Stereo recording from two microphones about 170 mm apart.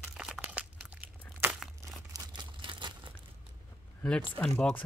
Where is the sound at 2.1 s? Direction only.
25° right (ahead or behind).